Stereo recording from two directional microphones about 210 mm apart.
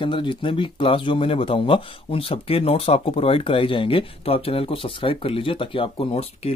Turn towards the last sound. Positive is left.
turn(degrees=30)  # may be behind; listen again after turning